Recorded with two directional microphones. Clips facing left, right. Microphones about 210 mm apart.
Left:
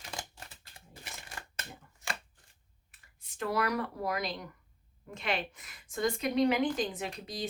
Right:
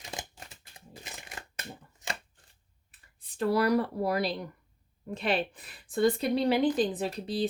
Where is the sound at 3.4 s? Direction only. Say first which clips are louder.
Right 6 dB; 35° right (ahead or behind).